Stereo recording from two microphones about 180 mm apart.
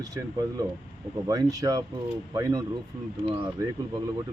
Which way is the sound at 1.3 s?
20° right (ahead or behind).